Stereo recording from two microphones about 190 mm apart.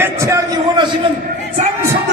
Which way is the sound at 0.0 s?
15° right (ahead or behind).